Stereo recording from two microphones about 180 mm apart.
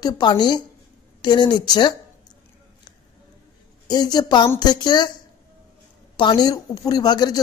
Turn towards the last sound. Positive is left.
turn(degrees=20)  # may be behind; listen again after turning